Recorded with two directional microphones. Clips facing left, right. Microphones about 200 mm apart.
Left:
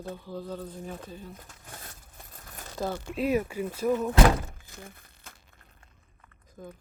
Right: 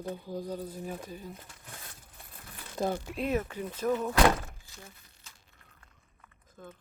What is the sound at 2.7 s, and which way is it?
Speech, 20° right (ahead or behind).